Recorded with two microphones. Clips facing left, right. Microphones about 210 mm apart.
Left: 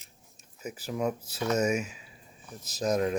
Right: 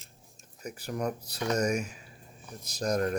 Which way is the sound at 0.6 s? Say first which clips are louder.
Left 2 dB; 5° left (ahead or behind).